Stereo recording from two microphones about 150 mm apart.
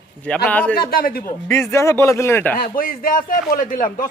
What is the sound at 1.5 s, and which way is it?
Speech, 20° left (ahead or behind).